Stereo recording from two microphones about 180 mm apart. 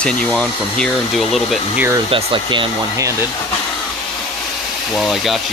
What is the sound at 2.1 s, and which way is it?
Speech, 25° right (ahead or behind).